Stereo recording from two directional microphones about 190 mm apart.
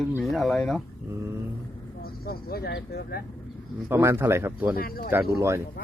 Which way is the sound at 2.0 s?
55° left (ahead or behind).